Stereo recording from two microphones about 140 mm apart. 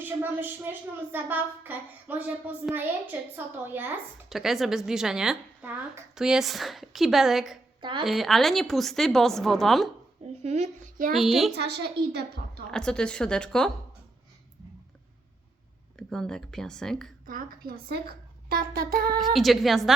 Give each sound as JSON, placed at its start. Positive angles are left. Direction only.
{"t": 0.0, "sound": "a woman's voice", "side_deg": -15}
{"t": 4.3, "sound": "a woman's voice", "side_deg": 0}
{"t": 7.8, "sound": "a woman's voice", "side_deg": -35}
{"t": 8.0, "sound": "a woman's voice", "side_deg": 0}
{"t": 10.4, "sound": "speech", "side_deg": -55}
{"t": 11.1, "sound": "a woman's voice", "side_deg": 0}
{"t": 12.7, "sound": "a woman's voice", "side_deg": 5}
{"t": 16.0, "sound": "a woman's voice", "side_deg": 5}
{"t": 17.2, "sound": "a woman's voice", "side_deg": -85}
{"t": 19.2, "sound": "a woman's voice", "side_deg": 0}